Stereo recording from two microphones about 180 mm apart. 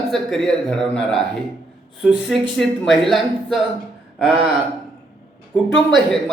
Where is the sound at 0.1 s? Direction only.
Centre (ahead or behind).